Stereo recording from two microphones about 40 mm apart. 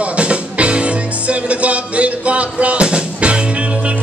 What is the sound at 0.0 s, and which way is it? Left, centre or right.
Music, right.